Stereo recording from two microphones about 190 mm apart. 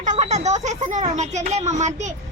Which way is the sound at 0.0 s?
40° right (ahead or behind).